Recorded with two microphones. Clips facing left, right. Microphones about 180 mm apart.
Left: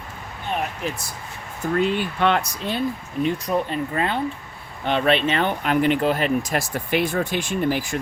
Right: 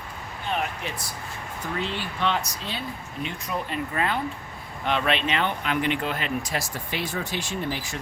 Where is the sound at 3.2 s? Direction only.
35° left (ahead or behind).